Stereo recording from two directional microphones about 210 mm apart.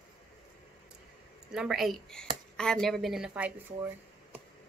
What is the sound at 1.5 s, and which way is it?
A woman's voice, centre (ahead or behind).